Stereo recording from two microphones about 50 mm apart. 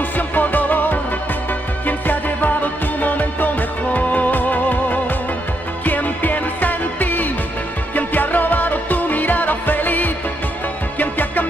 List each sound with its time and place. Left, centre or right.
0.1 s music: left